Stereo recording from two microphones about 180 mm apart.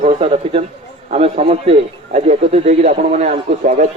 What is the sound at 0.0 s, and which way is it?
A man's voice, 40° right (ahead or behind).